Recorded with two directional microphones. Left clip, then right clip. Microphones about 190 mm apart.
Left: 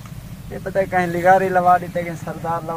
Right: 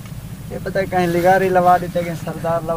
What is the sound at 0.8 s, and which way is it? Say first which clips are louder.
Speech: right 1 dB; 20° right (ahead or behind).